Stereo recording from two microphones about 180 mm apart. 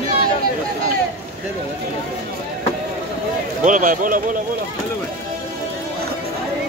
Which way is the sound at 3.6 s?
45° right (ahead or behind).